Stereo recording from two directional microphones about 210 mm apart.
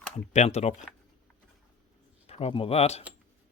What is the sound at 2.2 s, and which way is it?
Speech, 30° left (ahead or behind).